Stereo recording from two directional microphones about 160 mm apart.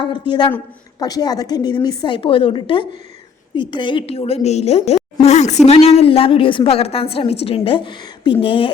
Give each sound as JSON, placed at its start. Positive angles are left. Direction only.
{"t": 0.0, "sound": "a woman's voice", "side_deg": 30}